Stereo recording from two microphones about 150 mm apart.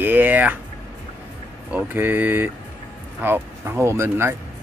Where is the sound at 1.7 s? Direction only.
10° right (ahead or behind).